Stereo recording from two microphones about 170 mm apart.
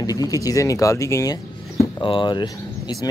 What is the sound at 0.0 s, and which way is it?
Speech, 20° left (ahead or behind).